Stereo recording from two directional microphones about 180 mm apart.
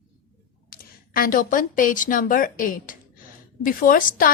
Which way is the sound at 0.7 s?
55° left (ahead or behind).